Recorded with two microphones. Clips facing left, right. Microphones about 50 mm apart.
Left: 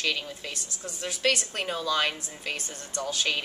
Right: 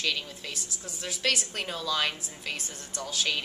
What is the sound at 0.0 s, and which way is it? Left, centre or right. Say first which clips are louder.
A woman's voice: left 2 dB; centre.